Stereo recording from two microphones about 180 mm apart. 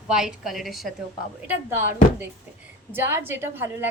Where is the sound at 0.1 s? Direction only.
5° right (ahead or behind).